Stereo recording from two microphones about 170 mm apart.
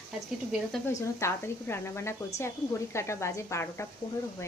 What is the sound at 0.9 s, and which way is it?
Speech, 15° left (ahead or behind).